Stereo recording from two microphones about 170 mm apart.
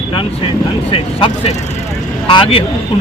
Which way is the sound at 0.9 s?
30° left (ahead or behind).